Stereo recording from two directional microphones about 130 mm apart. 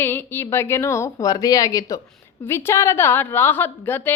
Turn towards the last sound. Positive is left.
turn(degrees=15)  # may be behind; listen again after turning